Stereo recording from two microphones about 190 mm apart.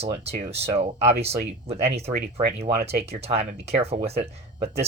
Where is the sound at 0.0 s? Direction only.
35° right (ahead or behind).